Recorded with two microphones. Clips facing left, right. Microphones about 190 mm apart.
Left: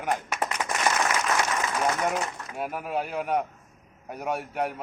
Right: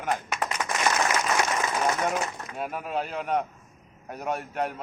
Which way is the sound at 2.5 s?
5° left (ahead or behind).